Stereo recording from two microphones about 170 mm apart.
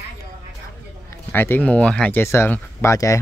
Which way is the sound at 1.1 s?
15° left (ahead or behind).